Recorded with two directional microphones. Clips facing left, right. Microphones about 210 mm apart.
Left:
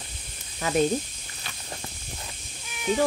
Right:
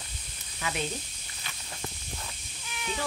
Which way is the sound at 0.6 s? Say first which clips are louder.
Left 10 dB; 40° left (ahead or behind).